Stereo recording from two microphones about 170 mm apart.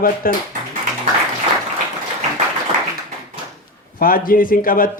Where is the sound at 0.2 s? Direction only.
55° left (ahead or behind).